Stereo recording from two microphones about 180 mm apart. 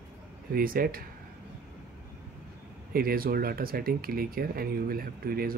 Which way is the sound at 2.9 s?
55° right (ahead or behind).